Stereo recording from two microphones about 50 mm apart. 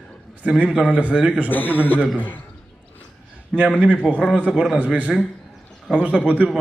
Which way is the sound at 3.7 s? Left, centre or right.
Right.